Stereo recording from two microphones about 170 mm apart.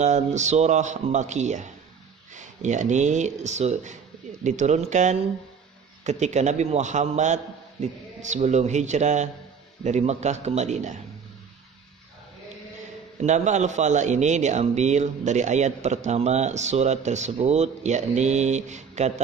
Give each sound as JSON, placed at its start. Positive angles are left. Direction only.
{"t": 0.0, "sound": "a man's voice", "side_deg": -45}
{"t": 13.2, "sound": "a man's voice", "side_deg": -45}